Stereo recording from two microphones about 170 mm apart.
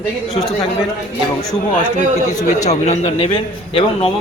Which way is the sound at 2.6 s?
40° left (ahead or behind).